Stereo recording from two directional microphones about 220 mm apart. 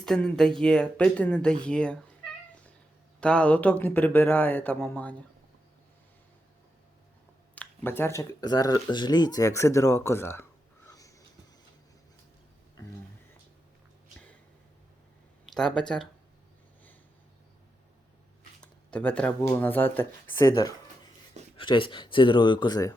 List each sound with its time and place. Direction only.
0.0 s speech: 5° left (ahead or behind)
3.2 s speech: 5° left (ahead or behind)
7.5 s speech: 10° left (ahead or behind)
10.8 s a sound: 15° left (ahead or behind)
15.5 s speech: 5° left (ahead or behind)
18.6 s speech: 5° left (ahead or behind)